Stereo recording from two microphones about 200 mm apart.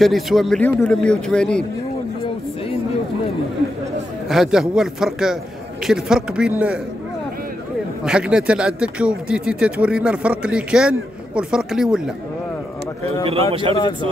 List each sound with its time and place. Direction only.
0.0 s a man's voice: centre (ahead or behind)
4.3 s a man's voice: centre (ahead or behind)
8.0 s a man's voice: 5° right (ahead or behind)
13.5 s speech: 25° right (ahead or behind)